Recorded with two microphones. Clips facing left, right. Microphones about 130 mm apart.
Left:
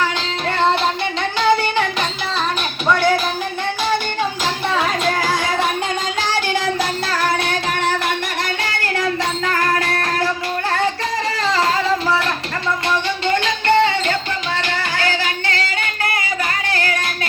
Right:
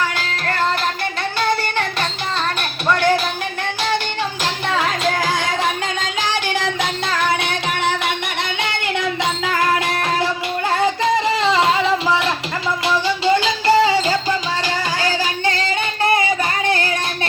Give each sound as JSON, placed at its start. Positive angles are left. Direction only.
{"t": 4.7, "sound": "music", "side_deg": 0}
{"t": 7.1, "sound": "music", "side_deg": 5}
{"t": 9.5, "sound": "music", "side_deg": -10}
{"t": 11.3, "sound": "a sound", "side_deg": -25}
{"t": 13.3, "sound": "music", "side_deg": -10}
{"t": 14.9, "sound": "singing", "side_deg": -20}
{"t": 16.6, "sound": "music", "side_deg": -20}